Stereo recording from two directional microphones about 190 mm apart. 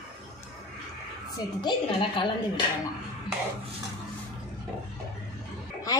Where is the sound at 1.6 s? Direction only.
25° left (ahead or behind).